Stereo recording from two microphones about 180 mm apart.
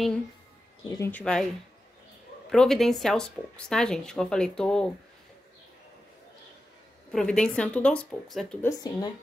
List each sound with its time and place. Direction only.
0.8 s speech: 15° left (ahead or behind)
2.5 s speech: 5° left (ahead or behind)
7.1 s speech: 5° left (ahead or behind)
8.6 s speech: 20° left (ahead or behind)